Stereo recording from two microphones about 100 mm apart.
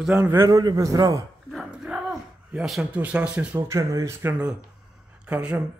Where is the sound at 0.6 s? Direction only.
40° right (ahead or behind).